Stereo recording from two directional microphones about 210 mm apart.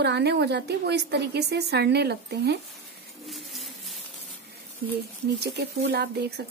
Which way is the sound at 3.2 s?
Centre (ahead or behind).